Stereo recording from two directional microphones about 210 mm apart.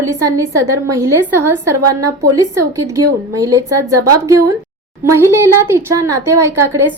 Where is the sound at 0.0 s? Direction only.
15° right (ahead or behind).